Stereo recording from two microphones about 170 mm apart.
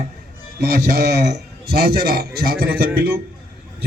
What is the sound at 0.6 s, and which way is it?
A man's voice, 75° right (ahead or behind).